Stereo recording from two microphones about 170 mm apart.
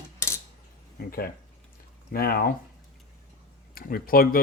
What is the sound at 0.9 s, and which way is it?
Speech, 60° left (ahead or behind).